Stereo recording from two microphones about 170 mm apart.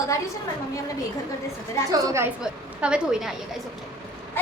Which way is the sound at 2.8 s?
5° right (ahead or behind).